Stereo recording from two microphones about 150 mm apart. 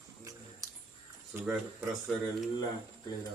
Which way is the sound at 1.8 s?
Centre (ahead or behind).